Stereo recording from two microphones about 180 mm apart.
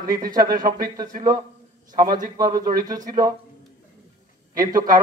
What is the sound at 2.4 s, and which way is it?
Speech, 50° right (ahead or behind).